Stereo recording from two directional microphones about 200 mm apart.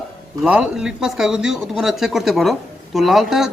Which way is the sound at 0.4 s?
5° right (ahead or behind).